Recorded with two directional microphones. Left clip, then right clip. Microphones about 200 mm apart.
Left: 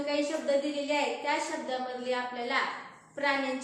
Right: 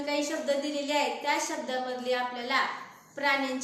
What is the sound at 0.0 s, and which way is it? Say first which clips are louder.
A woman's voice: even; 15° right (ahead or behind).